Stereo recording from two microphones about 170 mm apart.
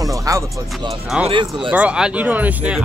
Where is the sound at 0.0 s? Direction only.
20° right (ahead or behind).